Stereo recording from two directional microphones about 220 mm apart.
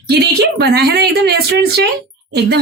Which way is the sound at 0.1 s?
45° right (ahead or behind).